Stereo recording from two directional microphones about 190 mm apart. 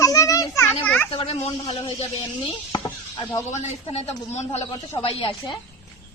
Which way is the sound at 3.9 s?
35° left (ahead or behind).